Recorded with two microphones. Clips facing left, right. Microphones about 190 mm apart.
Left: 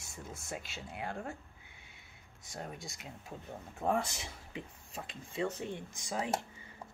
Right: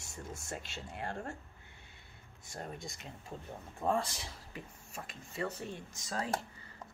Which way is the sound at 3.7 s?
15° left (ahead or behind).